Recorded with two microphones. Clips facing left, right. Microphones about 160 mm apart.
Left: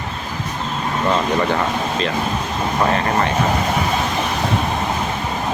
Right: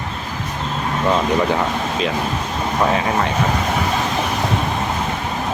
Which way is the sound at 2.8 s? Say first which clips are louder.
Even; 5° right (ahead or behind).